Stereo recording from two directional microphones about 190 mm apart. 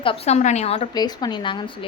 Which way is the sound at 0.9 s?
20° left (ahead or behind).